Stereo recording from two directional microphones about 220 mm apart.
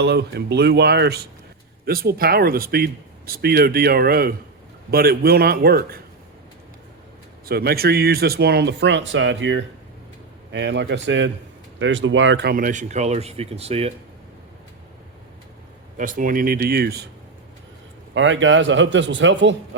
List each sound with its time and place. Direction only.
0.0 s speech: 50° right (ahead or behind)
7.4 s a man's voice: 45° right (ahead or behind); by 13.9 s 30° right (ahead or behind)
16.0 s speech: 35° right (ahead or behind)
18.1 s a man's voice: 60° right (ahead or behind)